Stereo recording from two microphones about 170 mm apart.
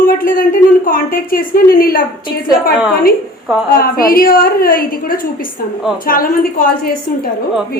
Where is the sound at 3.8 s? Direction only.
60° left (ahead or behind).